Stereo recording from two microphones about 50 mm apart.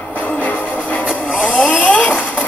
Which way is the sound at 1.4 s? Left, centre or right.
Left.